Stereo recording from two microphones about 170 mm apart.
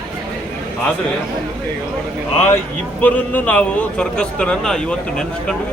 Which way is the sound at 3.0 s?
10° left (ahead or behind).